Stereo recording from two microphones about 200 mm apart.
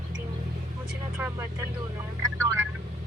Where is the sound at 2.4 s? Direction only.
15° right (ahead or behind).